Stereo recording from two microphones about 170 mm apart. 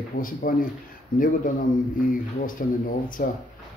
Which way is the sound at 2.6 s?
50° left (ahead or behind).